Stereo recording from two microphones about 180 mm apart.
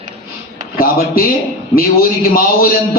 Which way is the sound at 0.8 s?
55° left (ahead or behind).